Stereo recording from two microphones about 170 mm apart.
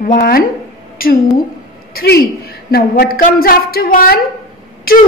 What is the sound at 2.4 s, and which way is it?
A woman's voice, 65° left (ahead or behind).